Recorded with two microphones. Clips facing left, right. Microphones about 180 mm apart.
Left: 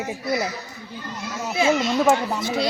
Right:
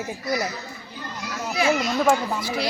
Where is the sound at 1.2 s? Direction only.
25° left (ahead or behind).